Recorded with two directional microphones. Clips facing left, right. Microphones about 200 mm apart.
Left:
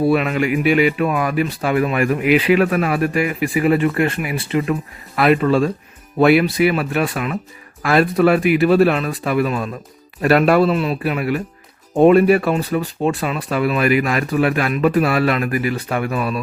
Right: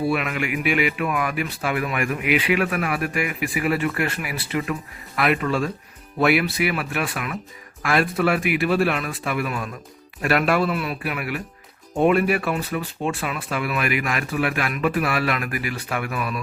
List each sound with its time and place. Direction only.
0.1 s speech: 30° left (ahead or behind)